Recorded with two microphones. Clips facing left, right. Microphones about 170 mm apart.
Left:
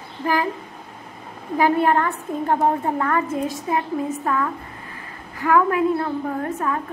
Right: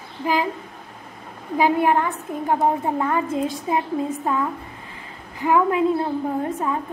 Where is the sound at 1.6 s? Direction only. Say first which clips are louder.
Even; 15° right (ahead or behind).